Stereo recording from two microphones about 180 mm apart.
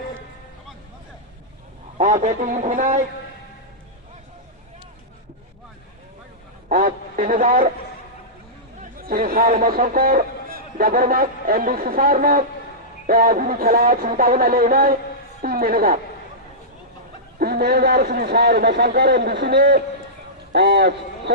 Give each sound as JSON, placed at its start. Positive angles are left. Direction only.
{"t": 2.0, "sound": "a sound", "side_deg": -45}
{"t": 6.7, "sound": "a man's voice", "side_deg": -50}
{"t": 8.8, "sound": "speech", "side_deg": -55}
{"t": 13.1, "sound": "a sound", "side_deg": -55}
{"t": 15.4, "sound": "a woman's voice", "side_deg": -55}
{"t": 17.4, "sound": "a man's voice", "side_deg": -60}